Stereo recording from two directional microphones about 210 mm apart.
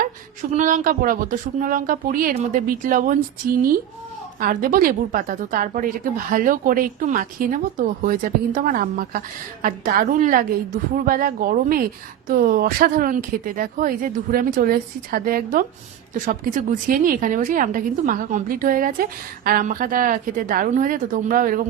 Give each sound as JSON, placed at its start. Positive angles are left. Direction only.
{"t": 0.5, "sound": "a woman's voice", "side_deg": -40}
{"t": 4.4, "sound": "a woman's voice", "side_deg": -40}